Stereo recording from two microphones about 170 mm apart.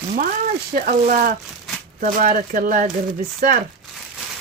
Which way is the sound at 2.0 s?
50° right (ahead or behind).